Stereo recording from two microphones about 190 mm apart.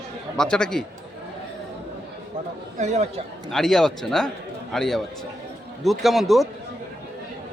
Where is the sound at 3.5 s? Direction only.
Centre (ahead or behind).